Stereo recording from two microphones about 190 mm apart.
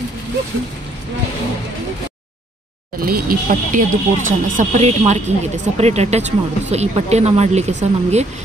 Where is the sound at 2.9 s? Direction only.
50° right (ahead or behind).